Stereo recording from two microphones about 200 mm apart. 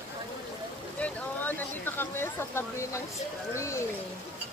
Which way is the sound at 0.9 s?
10° left (ahead or behind).